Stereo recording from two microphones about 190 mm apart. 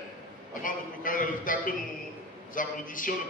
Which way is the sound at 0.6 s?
45° left (ahead or behind).